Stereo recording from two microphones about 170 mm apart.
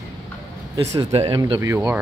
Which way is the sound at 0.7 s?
20° right (ahead or behind).